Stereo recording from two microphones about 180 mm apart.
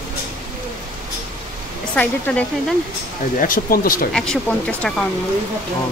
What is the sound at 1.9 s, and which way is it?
Speech, 10° left (ahead or behind).